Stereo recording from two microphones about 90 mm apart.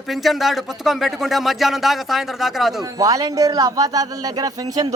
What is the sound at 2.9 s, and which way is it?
A man's voice, 40° right (ahead or behind).